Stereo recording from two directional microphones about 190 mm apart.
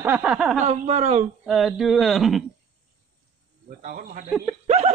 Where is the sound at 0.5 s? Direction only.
35° right (ahead or behind).